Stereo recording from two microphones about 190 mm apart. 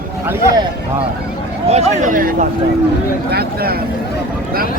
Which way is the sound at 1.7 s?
40° right (ahead or behind).